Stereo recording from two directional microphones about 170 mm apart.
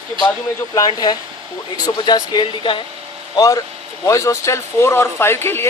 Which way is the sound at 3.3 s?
20° left (ahead or behind).